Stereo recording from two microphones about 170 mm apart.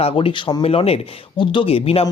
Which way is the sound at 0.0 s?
35° left (ahead or behind).